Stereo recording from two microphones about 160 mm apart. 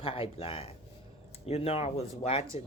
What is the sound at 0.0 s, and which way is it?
Speech, 35° left (ahead or behind).